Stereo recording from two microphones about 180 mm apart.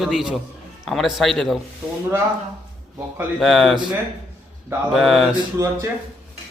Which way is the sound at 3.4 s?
Centre (ahead or behind).